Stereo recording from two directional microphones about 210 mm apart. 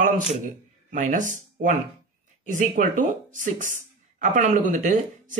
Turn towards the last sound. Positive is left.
turn(degrees=-35)  # may be behind; listen again after turning